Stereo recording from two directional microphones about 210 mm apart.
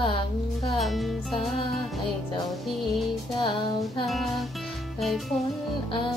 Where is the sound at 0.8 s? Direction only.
Centre (ahead or behind).